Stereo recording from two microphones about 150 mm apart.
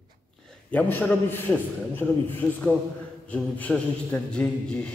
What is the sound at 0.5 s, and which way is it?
A man's voice, 10° left (ahead or behind).